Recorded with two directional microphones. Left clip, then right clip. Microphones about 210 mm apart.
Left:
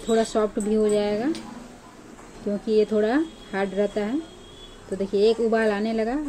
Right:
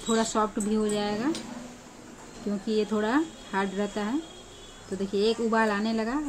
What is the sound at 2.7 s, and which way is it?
A woman's voice, 5° left (ahead or behind).